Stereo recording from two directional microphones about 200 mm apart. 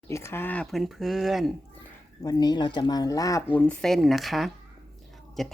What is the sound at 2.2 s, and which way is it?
Speech, 20° left (ahead or behind).